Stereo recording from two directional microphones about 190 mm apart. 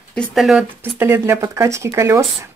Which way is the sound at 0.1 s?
Centre (ahead or behind).